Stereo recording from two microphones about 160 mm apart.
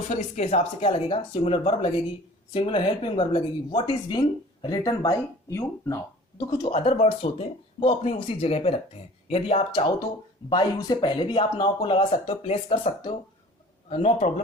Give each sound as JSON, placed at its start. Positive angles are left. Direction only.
{"t": 0.1, "sound": "speech", "side_deg": 45}
{"t": 6.7, "sound": "speech", "side_deg": 35}
{"t": 10.5, "sound": "speech", "side_deg": 25}